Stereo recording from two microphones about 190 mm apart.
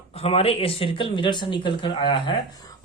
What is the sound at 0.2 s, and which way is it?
Speech, 30° left (ahead or behind).